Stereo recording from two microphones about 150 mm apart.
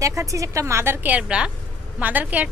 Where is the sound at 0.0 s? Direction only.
20° right (ahead or behind).